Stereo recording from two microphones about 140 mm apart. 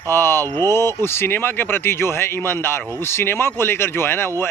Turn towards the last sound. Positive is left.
turn(degrees=15)  # may be behind; listen again after turning